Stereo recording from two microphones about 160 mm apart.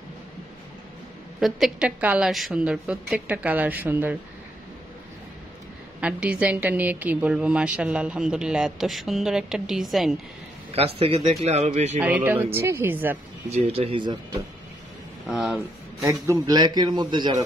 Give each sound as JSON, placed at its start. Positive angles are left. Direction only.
{"t": 1.4, "sound": "a woman's voice", "side_deg": -5}
{"t": 5.9, "sound": "a woman's voice", "side_deg": -10}
{"t": 11.0, "sound": "speech", "side_deg": -40}
{"t": 12.0, "sound": "a woman's voice", "side_deg": -10}
{"t": 13.5, "sound": "speech", "side_deg": -40}
{"t": 15.2, "sound": "speech", "side_deg": 0}
{"t": 16.0, "sound": "a man's voice", "side_deg": -20}